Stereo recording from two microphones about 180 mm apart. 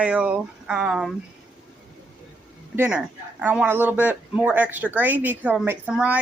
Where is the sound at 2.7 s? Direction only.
10° right (ahead or behind).